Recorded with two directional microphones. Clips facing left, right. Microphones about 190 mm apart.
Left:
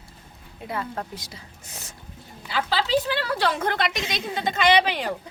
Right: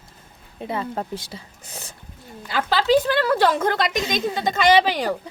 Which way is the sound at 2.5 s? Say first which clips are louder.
Right 5 dB; 50° right (ahead or behind).